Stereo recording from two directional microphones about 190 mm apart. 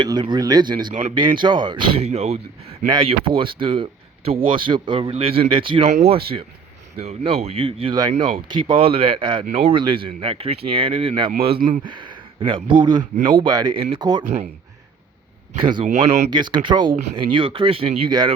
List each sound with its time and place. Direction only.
0.0 s speech: 25° right (ahead or behind)
15.6 s speech: 25° right (ahead or behind)
16.3 s speech: 25° right (ahead or behind)